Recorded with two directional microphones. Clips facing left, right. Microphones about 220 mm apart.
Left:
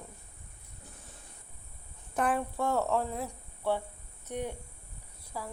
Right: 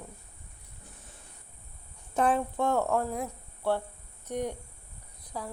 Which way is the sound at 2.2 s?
25° right (ahead or behind).